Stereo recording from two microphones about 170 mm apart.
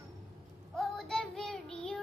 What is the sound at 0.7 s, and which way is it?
Child singing, centre (ahead or behind).